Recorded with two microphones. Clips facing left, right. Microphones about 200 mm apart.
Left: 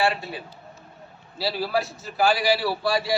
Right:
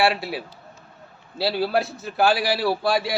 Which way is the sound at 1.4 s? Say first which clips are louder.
Right 3 dB; 60° right (ahead or behind).